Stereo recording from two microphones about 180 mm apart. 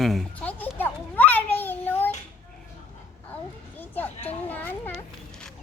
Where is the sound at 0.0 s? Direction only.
Centre (ahead or behind).